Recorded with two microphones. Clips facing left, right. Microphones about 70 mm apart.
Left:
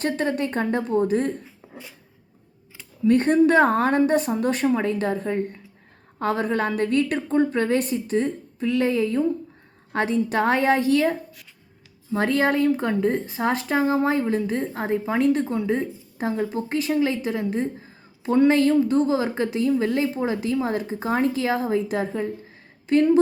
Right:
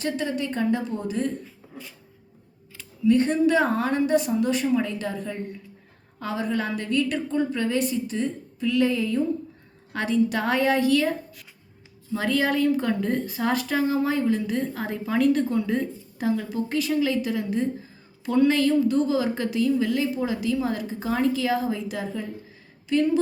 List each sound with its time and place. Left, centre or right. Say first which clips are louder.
0.0 s a woman's voice: left 3 dB; left
3.0 s a woman's voice: left 2 dB; left